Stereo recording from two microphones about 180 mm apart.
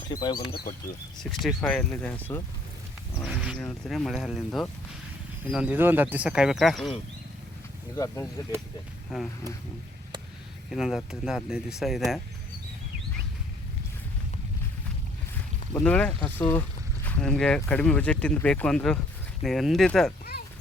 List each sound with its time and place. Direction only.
0.1 s speech: 20° left (ahead or behind)
1.2 s speech: centre (ahead or behind)
3.2 s wild animals: 5° right (ahead or behind)
3.6 s speech: 5° left (ahead or behind)
7.9 s speech: 15° left (ahead or behind)
9.1 s speech: 5° right (ahead or behind)
10.7 s speech: centre (ahead or behind)
15.7 s speech: 5° left (ahead or behind)